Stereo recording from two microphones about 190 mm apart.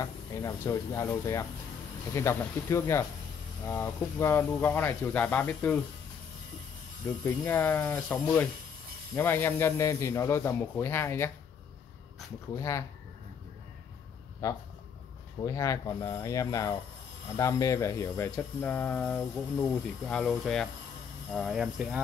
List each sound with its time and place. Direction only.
0.0 s speech: 15° left (ahead or behind)
7.2 s speech: 10° left (ahead or behind)
12.5 s speech: 15° left (ahead or behind)
14.4 s speech: 15° left (ahead or behind); by 22.0 s 5° right (ahead or behind)